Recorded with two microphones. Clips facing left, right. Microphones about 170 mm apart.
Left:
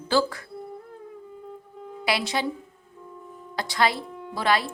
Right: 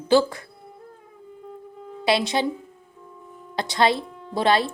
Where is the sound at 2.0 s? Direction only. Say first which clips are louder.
Right 5 dB; 25° right (ahead or behind).